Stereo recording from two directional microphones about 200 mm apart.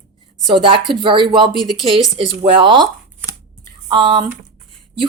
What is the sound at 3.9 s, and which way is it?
Speech, 20° right (ahead or behind).